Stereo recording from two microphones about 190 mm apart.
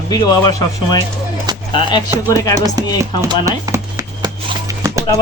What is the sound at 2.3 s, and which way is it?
Music, 15° left (ahead or behind).